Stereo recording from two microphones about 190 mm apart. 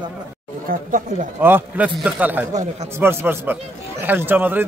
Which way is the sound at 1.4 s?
10° right (ahead or behind).